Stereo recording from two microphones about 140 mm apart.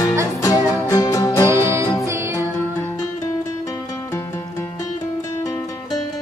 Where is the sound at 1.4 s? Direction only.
20° right (ahead or behind).